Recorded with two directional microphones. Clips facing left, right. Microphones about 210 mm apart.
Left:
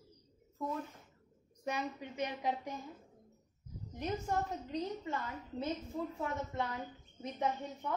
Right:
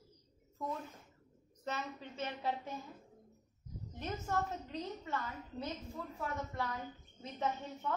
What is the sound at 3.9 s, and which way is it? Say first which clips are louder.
A woman's voice: left 2 dB; 15° left (ahead or behind).